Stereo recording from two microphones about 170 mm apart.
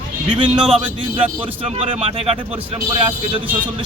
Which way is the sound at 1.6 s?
35° right (ahead or behind).